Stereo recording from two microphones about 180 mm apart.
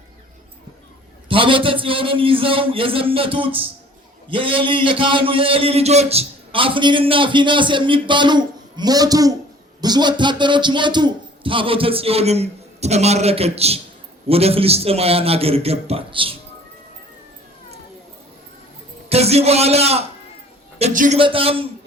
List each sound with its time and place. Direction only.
1.3 s a man's voice: 30° right (ahead or behind)
19.0 s a man's voice: 35° right (ahead or behind)
21.2 s a man's voice: 30° right (ahead or behind)